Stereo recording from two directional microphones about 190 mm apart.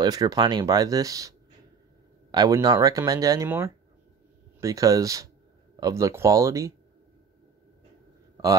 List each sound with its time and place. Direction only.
0.0 s speech: 20° right (ahead or behind)
2.3 s speech: 20° right (ahead or behind)